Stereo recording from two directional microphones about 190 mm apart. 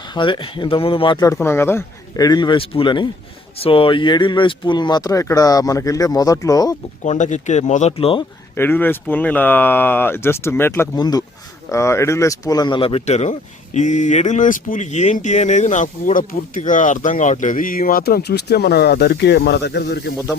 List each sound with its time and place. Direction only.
0.1 s speech: 25° left (ahead or behind)
7.0 s speech: 40° left (ahead or behind)
8.5 s speech: 10° left (ahead or behind); by 20.1 s 60° left (ahead or behind)